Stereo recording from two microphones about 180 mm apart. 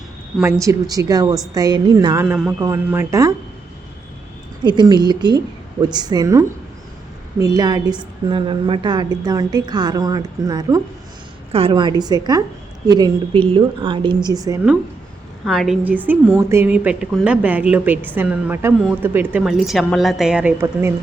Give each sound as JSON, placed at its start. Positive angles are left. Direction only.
{"t": 0.4, "sound": "a woman's voice", "side_deg": -15}
{"t": 2.2, "sound": "a woman's voice", "side_deg": -10}
{"t": 4.6, "sound": "a woman's voice", "side_deg": -25}
{"t": 15.4, "sound": "a woman's voice", "side_deg": 0}